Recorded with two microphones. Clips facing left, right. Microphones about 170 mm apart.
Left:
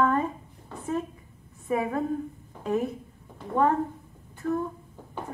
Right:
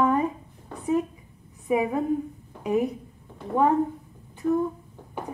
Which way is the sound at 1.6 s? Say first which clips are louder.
Right 3 dB; 15° right (ahead or behind).